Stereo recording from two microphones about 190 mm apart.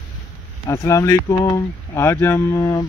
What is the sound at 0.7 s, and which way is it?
Speech, 15° left (ahead or behind).